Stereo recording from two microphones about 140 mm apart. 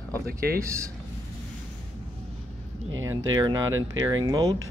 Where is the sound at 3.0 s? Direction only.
25° right (ahead or behind).